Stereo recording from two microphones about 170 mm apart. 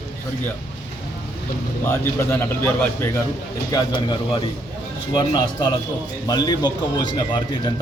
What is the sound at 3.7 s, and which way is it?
Speech, 25° left (ahead or behind).